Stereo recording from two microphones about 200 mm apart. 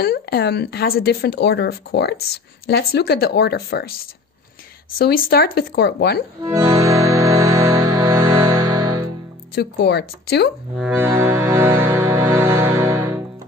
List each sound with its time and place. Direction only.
0.0 s speech: 50° left (ahead or behind)
4.9 s speech: 50° left (ahead or behind)
6.4 s music: 20° right (ahead or behind)
9.6 s speech: 55° left (ahead or behind)
10.8 s music: 5° right (ahead or behind)